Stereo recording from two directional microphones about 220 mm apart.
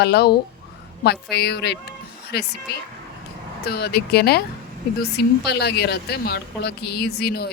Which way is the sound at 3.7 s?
45° left (ahead or behind).